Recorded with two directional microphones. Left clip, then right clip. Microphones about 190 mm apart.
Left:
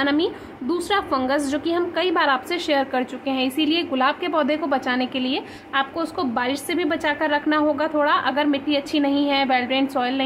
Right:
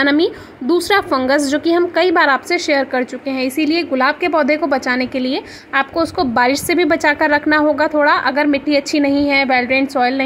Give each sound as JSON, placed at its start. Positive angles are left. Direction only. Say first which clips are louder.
{"t": 0.0, "sound": "a woman's voice", "louder": "right 7 dB", "side_deg": -30}